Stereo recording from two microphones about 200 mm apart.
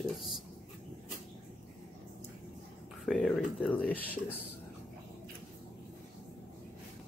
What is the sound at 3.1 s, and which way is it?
Speech, centre (ahead or behind).